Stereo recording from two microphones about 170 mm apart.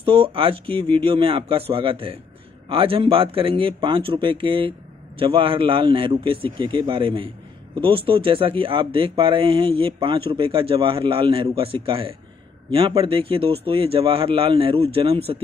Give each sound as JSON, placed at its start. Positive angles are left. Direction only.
{"t": 0.0, "sound": "speech", "side_deg": -30}